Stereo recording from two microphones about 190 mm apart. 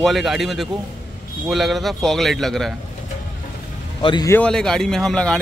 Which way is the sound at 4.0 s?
25° left (ahead or behind).